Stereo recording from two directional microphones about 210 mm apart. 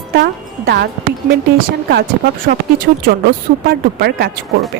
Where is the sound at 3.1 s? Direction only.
45° right (ahead or behind).